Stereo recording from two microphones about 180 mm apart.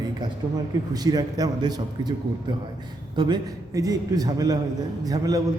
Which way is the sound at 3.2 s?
20° right (ahead or behind).